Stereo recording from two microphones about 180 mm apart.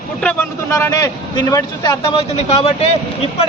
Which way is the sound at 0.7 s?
20° left (ahead or behind).